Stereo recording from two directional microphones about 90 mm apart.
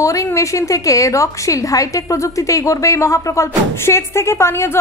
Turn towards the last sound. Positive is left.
turn(degrees=30)  # may be behind; listen again after turning